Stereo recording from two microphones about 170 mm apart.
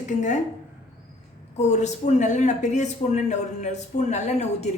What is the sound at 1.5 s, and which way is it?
Speech, 40° left (ahead or behind).